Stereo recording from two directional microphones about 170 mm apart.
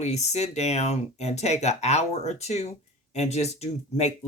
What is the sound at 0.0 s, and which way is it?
Speech, 40° left (ahead or behind).